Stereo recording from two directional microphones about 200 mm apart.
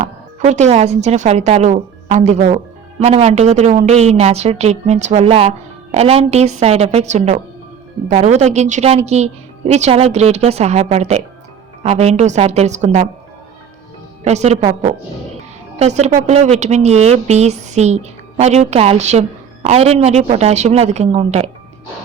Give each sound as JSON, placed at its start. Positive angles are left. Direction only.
{"t": 0.0, "sound": "a woman's voice", "side_deg": -35}
{"t": 14.3, "sound": "a woman's voice", "side_deg": -35}